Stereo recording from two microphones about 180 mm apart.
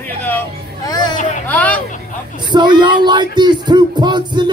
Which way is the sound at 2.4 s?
25° right (ahead or behind).